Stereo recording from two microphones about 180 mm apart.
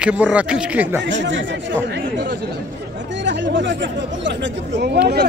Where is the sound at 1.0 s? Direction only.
90° right; by 2.4 s 65° right (ahead or behind).